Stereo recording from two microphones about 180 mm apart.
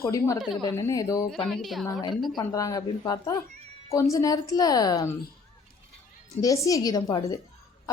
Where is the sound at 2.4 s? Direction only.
20° left (ahead or behind).